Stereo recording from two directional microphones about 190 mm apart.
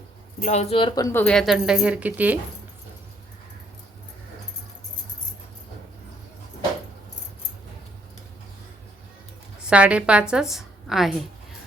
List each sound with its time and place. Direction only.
0.4 s speech: 35° left (ahead or behind); by 1.2 s 20° left (ahead or behind)
1.2 s speech: 5° left (ahead or behind)
9.6 s a woman's voice: 5° right (ahead or behind)